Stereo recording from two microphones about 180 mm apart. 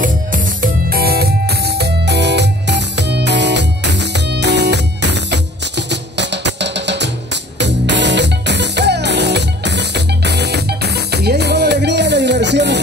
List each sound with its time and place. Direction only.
0.0 s music: 50° right (ahead or behind); by 12.8 s 70° right (ahead or behind)